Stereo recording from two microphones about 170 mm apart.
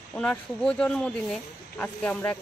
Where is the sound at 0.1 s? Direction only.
5° left (ahead or behind).